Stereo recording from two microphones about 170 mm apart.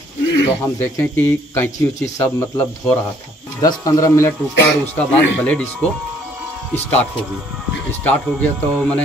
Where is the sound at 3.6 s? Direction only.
20° left (ahead or behind).